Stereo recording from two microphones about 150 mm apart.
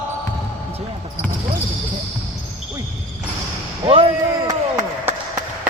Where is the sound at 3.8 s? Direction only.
35° right (ahead or behind).